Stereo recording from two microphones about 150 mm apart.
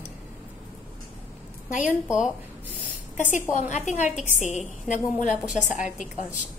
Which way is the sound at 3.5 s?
50° left (ahead or behind).